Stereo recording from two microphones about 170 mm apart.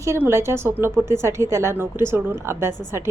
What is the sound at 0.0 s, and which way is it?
A woman's voice, 15° right (ahead or behind).